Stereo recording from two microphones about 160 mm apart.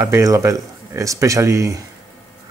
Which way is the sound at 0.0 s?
20° right (ahead or behind).